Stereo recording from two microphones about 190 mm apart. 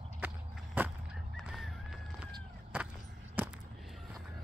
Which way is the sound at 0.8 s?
10° right (ahead or behind).